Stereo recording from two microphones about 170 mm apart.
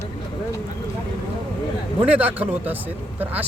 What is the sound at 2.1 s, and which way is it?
Speech, 10° right (ahead or behind).